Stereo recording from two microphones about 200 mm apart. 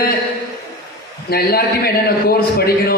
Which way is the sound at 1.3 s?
50° left (ahead or behind).